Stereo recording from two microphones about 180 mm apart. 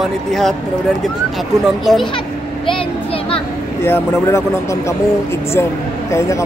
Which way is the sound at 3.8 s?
15° left (ahead or behind).